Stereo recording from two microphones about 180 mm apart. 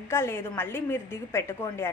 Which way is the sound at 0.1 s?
15° left (ahead or behind).